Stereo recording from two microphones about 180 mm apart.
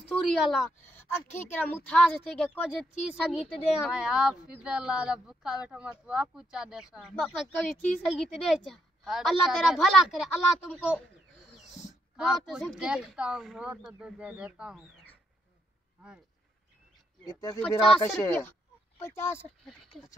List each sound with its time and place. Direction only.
0.2 s a woman's voice: centre (ahead or behind)
0.7 s a woman's voice: 10° left (ahead or behind)
3.2 s a woman's voice: 5° right (ahead or behind)
12.2 s a woman's voice: 5° right (ahead or behind)
17.3 s speech: 20° left (ahead or behind)
17.6 s a woman's voice: 5° left (ahead or behind)
18.0 s speech: 15° left (ahead or behind)
19.9 s a woman's voice: centre (ahead or behind)